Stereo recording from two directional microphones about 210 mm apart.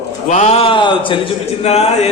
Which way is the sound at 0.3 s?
35° left (ahead or behind).